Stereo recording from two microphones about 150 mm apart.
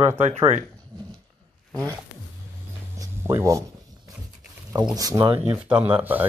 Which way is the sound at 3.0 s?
20° right (ahead or behind).